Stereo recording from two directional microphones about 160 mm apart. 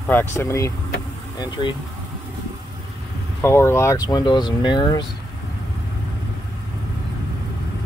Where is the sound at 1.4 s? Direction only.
30° left (ahead or behind).